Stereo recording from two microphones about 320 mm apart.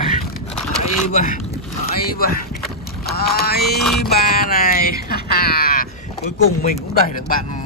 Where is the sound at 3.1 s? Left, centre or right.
Left.